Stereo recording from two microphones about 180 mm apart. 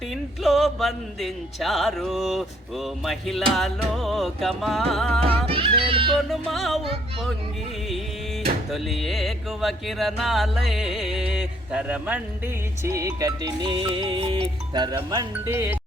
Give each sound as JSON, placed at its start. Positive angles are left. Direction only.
{"t": 0.4, "sound": "music", "side_deg": 0}
{"t": 5.5, "sound": "speech", "side_deg": -30}
{"t": 6.1, "sound": "music", "side_deg": 0}
{"t": 8.7, "sound": "music", "side_deg": 0}
{"t": 15.4, "sound": "speech", "side_deg": -15}